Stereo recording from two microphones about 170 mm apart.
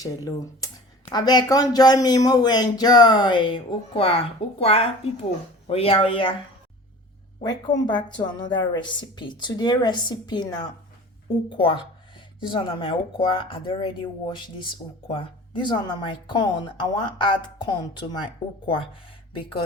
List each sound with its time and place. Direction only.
0.0 s speech: 20° left (ahead or behind)
7.4 s speech: 25° left (ahead or behind)